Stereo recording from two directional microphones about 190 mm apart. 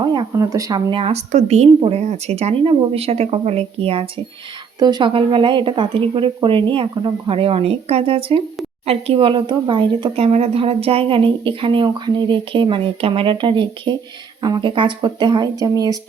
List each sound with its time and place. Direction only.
0.0 s speech: 25° right (ahead or behind)